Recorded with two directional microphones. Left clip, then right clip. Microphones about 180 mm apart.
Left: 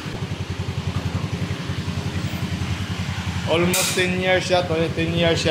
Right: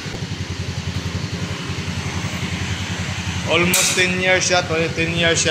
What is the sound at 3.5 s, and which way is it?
Speech, 15° left (ahead or behind).